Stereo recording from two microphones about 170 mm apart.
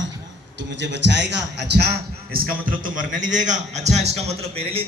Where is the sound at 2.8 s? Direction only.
50° right (ahead or behind).